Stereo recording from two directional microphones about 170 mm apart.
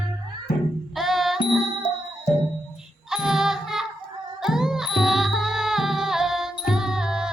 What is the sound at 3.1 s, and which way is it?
Music, 5° right (ahead or behind).